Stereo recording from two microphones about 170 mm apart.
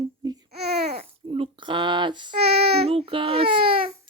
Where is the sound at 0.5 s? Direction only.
70° right (ahead or behind).